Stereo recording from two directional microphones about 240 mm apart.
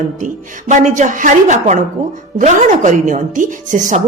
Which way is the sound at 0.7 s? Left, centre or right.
Right.